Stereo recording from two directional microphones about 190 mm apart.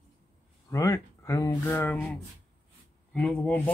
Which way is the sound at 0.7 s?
15° left (ahead or behind).